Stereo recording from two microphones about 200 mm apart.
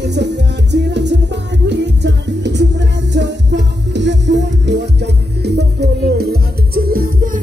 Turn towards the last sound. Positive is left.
turn(degrees=-45)  # may be behind; listen again after turning